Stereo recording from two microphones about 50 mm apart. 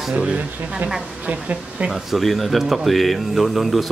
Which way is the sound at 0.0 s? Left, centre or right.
Centre.